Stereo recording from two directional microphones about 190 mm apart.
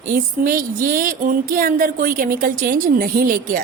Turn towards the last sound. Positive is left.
turn(degrees=-50)  # may be behind; listen again after turning